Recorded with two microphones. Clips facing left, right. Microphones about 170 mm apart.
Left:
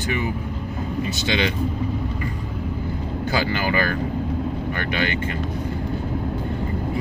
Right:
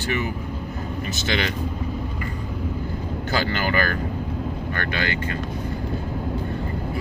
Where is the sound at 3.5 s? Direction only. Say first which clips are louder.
Left 1 dB; 15° left (ahead or behind).